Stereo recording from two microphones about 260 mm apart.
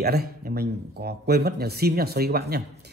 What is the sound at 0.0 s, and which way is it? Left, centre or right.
A man's voice, right.